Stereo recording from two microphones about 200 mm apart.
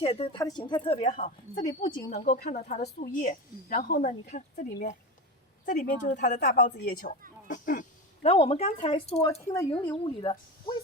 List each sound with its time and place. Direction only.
0.0 s speech: 30° left (ahead or behind)
0.3 s speech: 20° left (ahead or behind)
1.1 s speech: 40° left (ahead or behind)
2.8 s speech: 45° left (ahead or behind)
8.2 s speech: 30° left (ahead or behind)
9.6 s a woman's voice: 10° left (ahead or behind)
9.9 s speech: 25° left (ahead or behind)